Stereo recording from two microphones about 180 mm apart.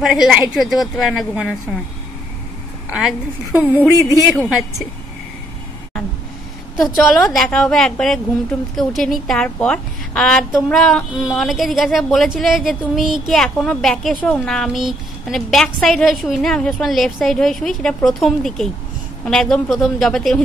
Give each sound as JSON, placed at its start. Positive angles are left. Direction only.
{"t": 0.0, "sound": "a woman's voice", "side_deg": -5}
{"t": 2.9, "sound": "a woman's voice", "side_deg": -5}
{"t": 7.2, "sound": "a woman's voice", "side_deg": 0}